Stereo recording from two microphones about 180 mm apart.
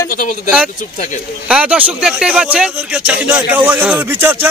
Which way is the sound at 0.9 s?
40° left (ahead or behind).